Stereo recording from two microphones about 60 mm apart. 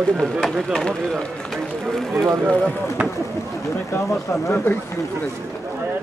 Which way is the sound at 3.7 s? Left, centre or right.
Left.